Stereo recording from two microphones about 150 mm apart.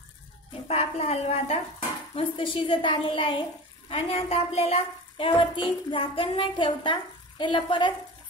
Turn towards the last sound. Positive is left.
turn(degrees=35)  # may be behind; listen again after turning